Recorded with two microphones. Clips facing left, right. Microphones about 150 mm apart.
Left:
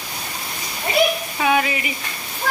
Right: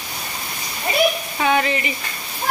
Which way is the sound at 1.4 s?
5° left (ahead or behind).